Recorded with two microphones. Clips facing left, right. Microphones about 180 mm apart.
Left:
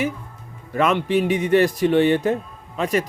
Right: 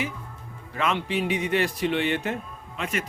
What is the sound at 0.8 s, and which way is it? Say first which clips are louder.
A man's voice: left 7 dB; 50° left (ahead or behind).